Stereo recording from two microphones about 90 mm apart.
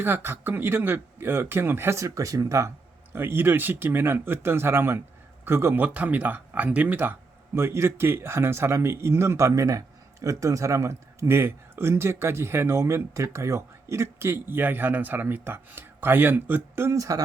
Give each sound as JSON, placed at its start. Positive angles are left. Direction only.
{"t": 0.0, "sound": "speech", "side_deg": -25}